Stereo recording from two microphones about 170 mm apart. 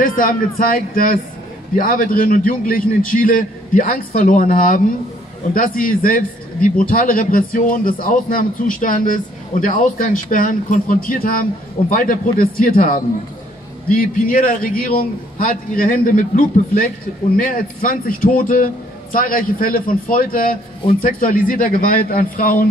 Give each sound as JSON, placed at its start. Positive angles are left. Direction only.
{"t": 0.0, "sound": "a man's voice", "side_deg": 55}